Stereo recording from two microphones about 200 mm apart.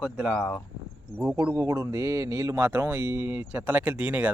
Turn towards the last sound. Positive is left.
turn(degrees=-5)  # may be behind; listen again after turning